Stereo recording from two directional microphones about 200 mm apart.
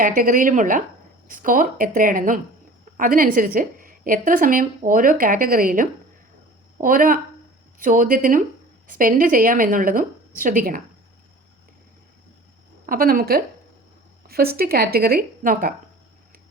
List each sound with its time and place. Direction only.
0.0 s a woman's voice: 45° right (ahead or behind)
12.8 s a woman's voice: 45° right (ahead or behind)